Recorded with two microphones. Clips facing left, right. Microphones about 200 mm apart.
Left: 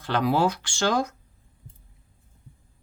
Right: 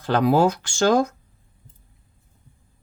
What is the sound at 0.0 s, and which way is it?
Speech, 45° right (ahead or behind).